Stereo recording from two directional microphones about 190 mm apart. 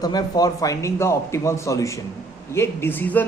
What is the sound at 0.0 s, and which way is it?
A man's voice, 20° left (ahead or behind).